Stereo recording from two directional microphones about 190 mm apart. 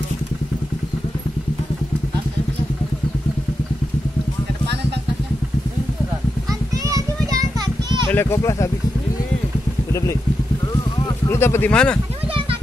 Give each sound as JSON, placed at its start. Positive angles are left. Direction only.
{"t": 6.7, "sound": "children playing", "side_deg": -20}
{"t": 8.1, "sound": "speech", "side_deg": 10}
{"t": 11.2, "sound": "speech", "side_deg": 15}